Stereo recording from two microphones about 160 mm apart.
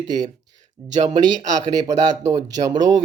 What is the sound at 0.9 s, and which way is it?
Speech, 45° right (ahead or behind).